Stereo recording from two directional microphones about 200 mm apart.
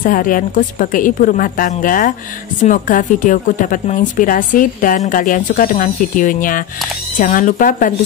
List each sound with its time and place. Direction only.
0.0 s a woman's voice: 45° left (ahead or behind)